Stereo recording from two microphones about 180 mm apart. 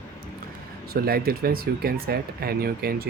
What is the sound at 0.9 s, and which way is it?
Speech, 55° right (ahead or behind).